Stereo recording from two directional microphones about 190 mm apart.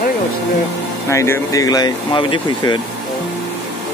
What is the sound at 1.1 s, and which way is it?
Speech, 15° left (ahead or behind).